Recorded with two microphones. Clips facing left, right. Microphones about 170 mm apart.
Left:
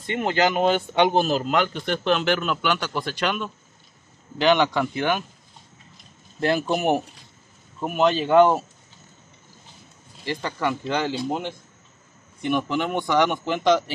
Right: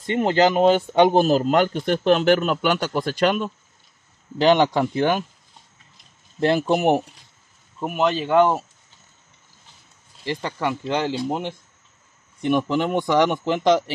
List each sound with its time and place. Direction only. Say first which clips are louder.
0.0 s speech: right 4 dB; 35° right (ahead or behind)
6.7 s speech: right 4 dB; 20° right (ahead or behind)
7.8 s speech: left 1 dB; 10° right (ahead or behind)
10.2 s speech: right 1 dB; 20° right (ahead or behind)
12.4 s speech: right 3 dB; 30° right (ahead or behind)